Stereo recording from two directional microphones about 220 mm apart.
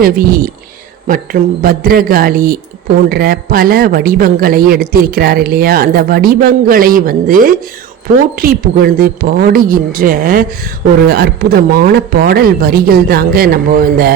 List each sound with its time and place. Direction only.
0.0 s speech: 40° right (ahead or behind)